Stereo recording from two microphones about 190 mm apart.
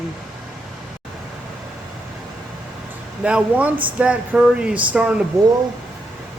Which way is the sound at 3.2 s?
5° right (ahead or behind).